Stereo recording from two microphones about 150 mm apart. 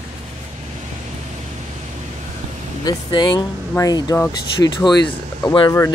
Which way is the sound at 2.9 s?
30° left (ahead or behind).